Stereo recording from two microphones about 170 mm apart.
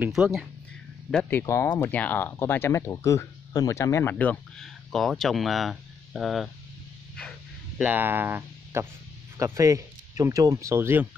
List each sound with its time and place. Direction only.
0.0 s speech: centre (ahead or behind)
1.4 s speech: 20° left (ahead or behind); by 6.5 s centre (ahead or behind)
7.8 s speech: 10° right (ahead or behind)